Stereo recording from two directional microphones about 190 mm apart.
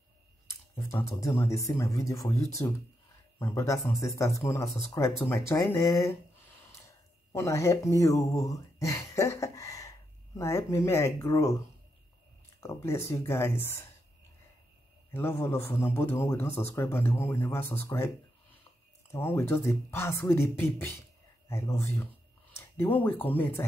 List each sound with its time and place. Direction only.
0.5 s a man's voice: 15° left (ahead or behind)
15.0 s a man's voice: 10° left (ahead or behind)
19.1 s a man's voice: 15° left (ahead or behind)